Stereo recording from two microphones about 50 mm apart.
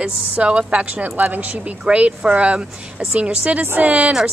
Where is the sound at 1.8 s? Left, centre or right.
Right.